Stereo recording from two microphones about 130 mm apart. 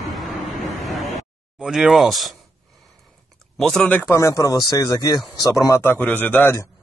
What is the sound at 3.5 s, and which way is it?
Speech, 5° left (ahead or behind).